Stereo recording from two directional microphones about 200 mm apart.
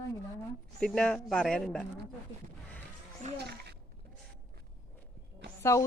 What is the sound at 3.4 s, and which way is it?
Speech, 55° right (ahead or behind).